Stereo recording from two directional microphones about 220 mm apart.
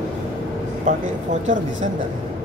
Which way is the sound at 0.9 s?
35° right (ahead or behind).